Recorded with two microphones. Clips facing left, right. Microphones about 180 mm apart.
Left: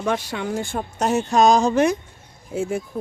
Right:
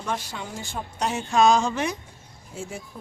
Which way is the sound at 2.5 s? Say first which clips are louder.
Left 11 dB; 65° left (ahead or behind).